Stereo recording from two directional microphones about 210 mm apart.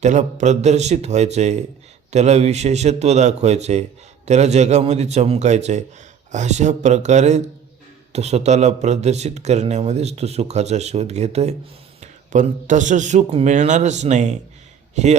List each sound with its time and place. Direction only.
0.0 s speech: 35° right (ahead or behind)